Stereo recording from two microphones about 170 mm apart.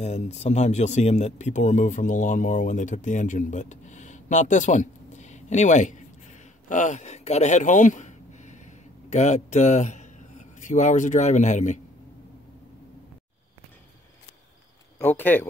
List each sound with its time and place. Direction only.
0.0 s a man's voice: 40° left (ahead or behind)
15.0 s speech: 10° left (ahead or behind)